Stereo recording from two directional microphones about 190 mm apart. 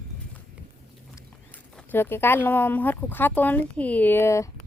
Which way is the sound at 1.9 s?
10° left (ahead or behind).